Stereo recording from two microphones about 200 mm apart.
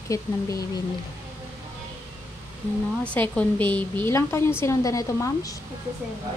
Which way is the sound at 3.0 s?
5° left (ahead or behind).